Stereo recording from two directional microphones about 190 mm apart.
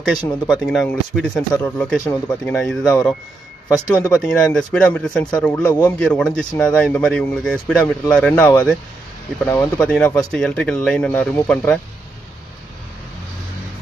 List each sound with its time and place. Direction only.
0.5 s speech: 5° left (ahead or behind)
3.6 s speech: 15° left (ahead or behind)
4.1 s speech: 5° left (ahead or behind); by 5.9 s 20° left (ahead or behind)
5.9 s speech: 5° left (ahead or behind)